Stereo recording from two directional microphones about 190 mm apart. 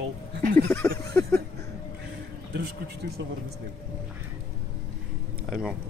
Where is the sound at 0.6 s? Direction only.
15° left (ahead or behind).